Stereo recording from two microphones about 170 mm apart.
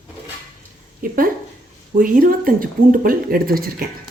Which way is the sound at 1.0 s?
55° right (ahead or behind).